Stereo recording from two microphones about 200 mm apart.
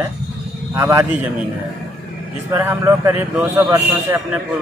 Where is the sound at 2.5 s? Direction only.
10° right (ahead or behind).